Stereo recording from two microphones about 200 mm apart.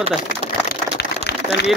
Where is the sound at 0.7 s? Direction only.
55° left (ahead or behind).